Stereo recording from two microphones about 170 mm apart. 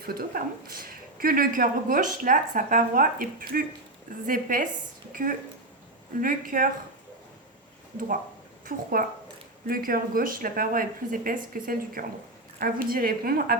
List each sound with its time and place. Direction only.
0.0 s a woman's voice: 65° right (ahead or behind)
8.6 s speech: 55° right (ahead or behind)